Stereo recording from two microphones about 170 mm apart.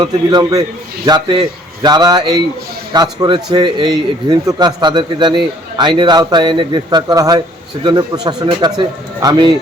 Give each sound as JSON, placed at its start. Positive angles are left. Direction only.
{"t": 0.0, "sound": "a man's voice", "side_deg": -25}